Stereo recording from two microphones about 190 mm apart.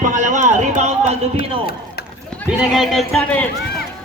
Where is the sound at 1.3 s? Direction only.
50° left (ahead or behind).